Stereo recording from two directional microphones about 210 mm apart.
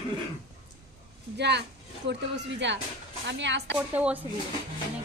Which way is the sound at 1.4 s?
55° right (ahead or behind).